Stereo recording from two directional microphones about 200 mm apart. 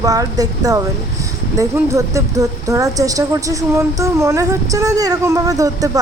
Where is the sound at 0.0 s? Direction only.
15° right (ahead or behind).